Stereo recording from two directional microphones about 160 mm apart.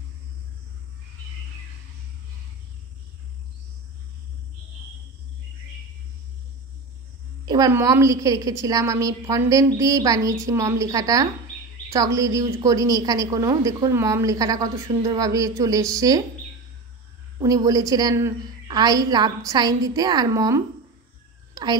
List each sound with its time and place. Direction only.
7.4 s a woman's voice: 25° right (ahead or behind)
17.4 s a woman's voice: 20° right (ahead or behind)